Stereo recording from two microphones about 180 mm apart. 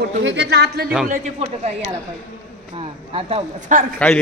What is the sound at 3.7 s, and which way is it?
Speech, 45° right (ahead or behind).